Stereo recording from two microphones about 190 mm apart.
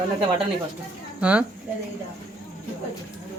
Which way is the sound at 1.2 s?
5° right (ahead or behind).